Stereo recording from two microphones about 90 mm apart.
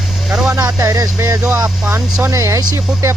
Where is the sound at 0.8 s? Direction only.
40° right (ahead or behind).